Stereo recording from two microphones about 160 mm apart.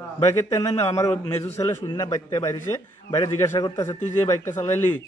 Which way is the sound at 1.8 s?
30° left (ahead or behind).